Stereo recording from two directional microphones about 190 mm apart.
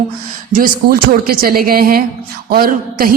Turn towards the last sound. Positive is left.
turn(degrees=-50)  # may be behind; listen again after turning